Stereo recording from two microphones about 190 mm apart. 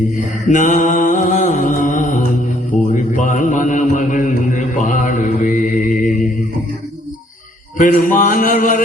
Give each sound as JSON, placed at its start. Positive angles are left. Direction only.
{"t": 0.4, "sound": "mantra", "side_deg": 40}
{"t": 7.8, "sound": "mantra", "side_deg": 45}